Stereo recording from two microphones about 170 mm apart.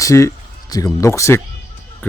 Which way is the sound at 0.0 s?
15° left (ahead or behind).